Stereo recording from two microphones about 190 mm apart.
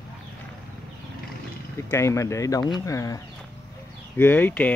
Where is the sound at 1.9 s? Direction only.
15° left (ahead or behind).